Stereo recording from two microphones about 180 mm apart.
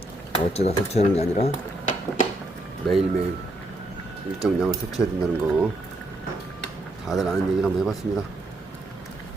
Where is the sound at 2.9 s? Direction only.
Centre (ahead or behind).